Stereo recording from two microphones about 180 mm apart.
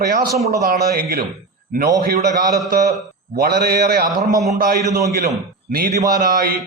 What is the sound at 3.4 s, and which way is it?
A man's voice, 60° right (ahead or behind).